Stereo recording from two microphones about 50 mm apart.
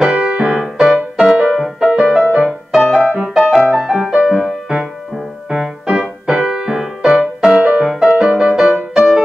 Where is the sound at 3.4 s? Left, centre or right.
Centre.